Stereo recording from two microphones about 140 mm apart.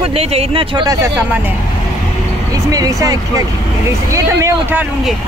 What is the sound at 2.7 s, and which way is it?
Speech, 25° right (ahead or behind).